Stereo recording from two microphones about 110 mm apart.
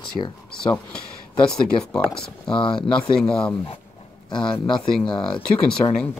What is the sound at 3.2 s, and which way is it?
Speech, 5° left (ahead or behind).